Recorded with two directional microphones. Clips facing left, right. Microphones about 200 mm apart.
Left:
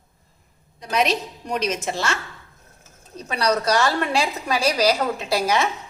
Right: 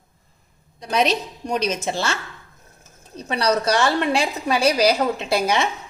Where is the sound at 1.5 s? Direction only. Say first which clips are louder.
Right 1 dB; 35° right (ahead or behind).